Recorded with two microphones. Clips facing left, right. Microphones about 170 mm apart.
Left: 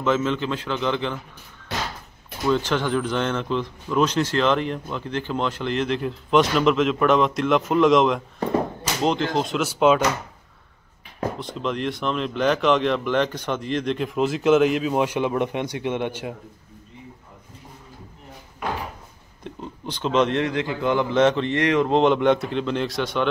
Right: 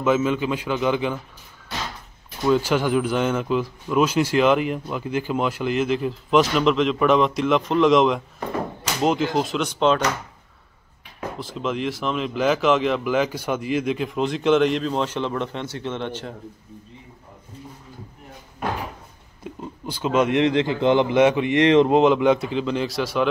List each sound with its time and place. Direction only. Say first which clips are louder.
0.0 s speech: right 2 dB; 10° right (ahead or behind)
2.4 s speech: right 2 dB; 10° right (ahead or behind); by 10.0 s 5° left (ahead or behind)
11.3 s speech: right 1 dB; centre (ahead or behind)
19.4 s speech: right 1 dB; 5° right (ahead or behind)
20.4 s a man's voice: right 5 dB; 25° right (ahead or behind)
21.1 s speech: right 2 dB; 10° right (ahead or behind)